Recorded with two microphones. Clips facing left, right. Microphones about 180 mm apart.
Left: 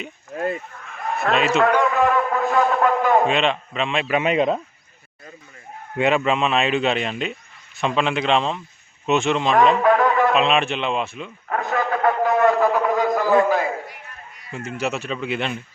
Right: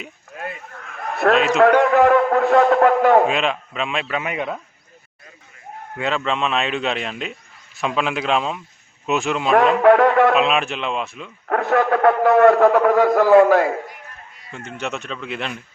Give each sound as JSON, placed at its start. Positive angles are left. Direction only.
{"t": 0.3, "sound": "a sound", "side_deg": 35}
{"t": 1.2, "sound": "a man's voice", "side_deg": -55}
{"t": 1.6, "sound": "a man's voice", "side_deg": -70}
{"t": 3.2, "sound": "a man's voice", "side_deg": -5}
{"t": 4.1, "sound": "speech", "side_deg": 25}
{"t": 6.0, "sound": "a man's voice", "side_deg": 15}
{"t": 9.8, "sound": "music", "side_deg": -65}
{"t": 10.3, "sound": "a man's voice", "side_deg": -5}
{"t": 11.4, "sound": "a man's voice", "side_deg": -60}
{"t": 14.5, "sound": "a man's voice", "side_deg": 5}